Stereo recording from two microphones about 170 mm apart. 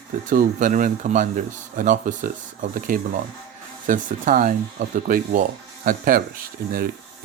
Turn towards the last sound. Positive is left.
turn(degrees=-60)  # may be behind; listen again after turning